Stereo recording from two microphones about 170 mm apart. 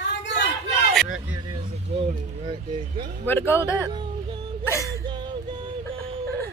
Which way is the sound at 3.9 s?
30° right (ahead or behind).